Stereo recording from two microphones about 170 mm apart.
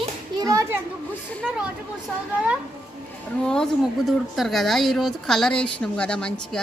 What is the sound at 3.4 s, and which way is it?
A woman's voice, 5° left (ahead or behind).